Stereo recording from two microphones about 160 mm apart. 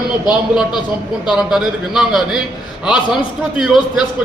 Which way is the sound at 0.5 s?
5° right (ahead or behind).